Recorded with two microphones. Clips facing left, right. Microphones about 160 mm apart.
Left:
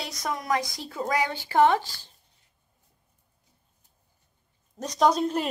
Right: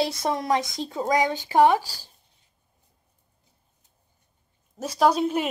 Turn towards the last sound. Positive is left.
turn(degrees=-5)  # may be behind; listen again after turning